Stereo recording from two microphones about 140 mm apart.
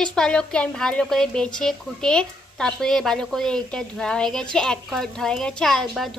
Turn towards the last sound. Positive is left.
turn(degrees=0)  # may be behind; listen again after turning